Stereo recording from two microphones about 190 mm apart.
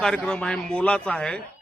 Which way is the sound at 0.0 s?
5° left (ahead or behind).